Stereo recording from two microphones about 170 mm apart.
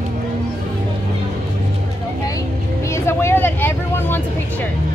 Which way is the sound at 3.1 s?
15° left (ahead or behind).